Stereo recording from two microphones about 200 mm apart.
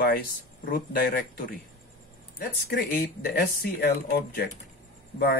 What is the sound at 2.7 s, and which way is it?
Speech, 50° left (ahead or behind).